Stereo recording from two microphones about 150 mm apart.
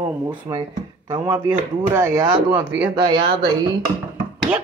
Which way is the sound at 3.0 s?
30° right (ahead or behind).